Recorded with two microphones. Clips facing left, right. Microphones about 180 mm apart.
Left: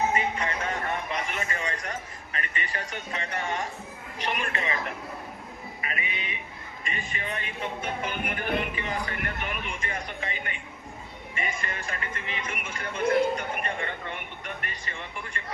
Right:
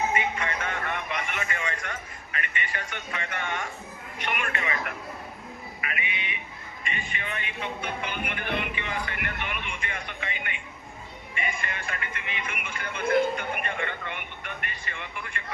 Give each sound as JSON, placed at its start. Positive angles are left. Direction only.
{"t": 0.1, "sound": "a man's voice", "side_deg": 35}
{"t": 5.8, "sound": "speech", "side_deg": 35}